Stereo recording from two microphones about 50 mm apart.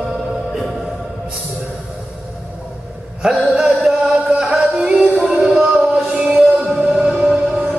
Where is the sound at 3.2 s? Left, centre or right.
Centre.